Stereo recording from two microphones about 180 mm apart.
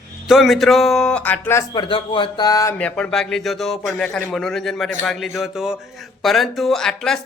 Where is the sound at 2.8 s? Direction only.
5° left (ahead or behind).